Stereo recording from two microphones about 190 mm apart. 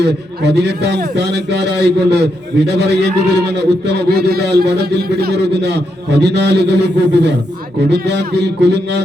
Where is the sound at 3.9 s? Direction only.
60° right (ahead or behind).